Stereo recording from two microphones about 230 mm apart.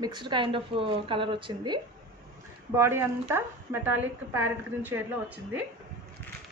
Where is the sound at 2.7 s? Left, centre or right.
Centre.